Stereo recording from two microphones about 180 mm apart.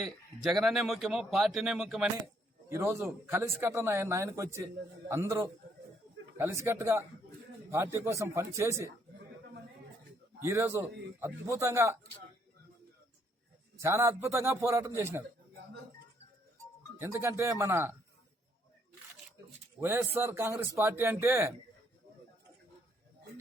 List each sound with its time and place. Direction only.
0.0 s speech: centre (ahead or behind)
2.6 s a man's voice: 15° right (ahead or behind)
10.4 s a man's voice: 15° right (ahead or behind)
13.7 s a man's voice: 15° right (ahead or behind)
17.0 s a man's voice: 15° right (ahead or behind)
19.8 s a man's voice: 15° right (ahead or behind)